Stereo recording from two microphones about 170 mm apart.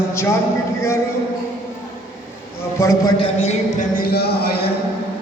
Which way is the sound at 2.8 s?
15° left (ahead or behind).